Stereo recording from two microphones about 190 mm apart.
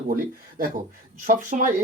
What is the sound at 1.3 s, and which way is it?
Speech, 45° right (ahead or behind).